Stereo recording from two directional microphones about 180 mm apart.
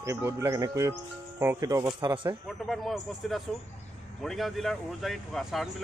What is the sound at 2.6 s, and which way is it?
Speech, centre (ahead or behind).